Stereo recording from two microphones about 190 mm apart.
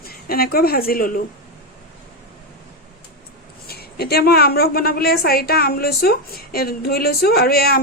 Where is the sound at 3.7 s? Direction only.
55° left (ahead or behind).